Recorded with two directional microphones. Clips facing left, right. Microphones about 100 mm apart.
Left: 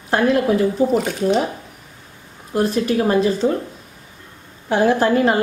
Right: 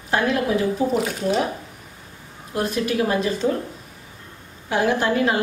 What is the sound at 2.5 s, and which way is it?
Speech, 40° left (ahead or behind).